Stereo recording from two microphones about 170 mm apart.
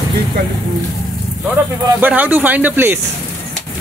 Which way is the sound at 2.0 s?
10° right (ahead or behind).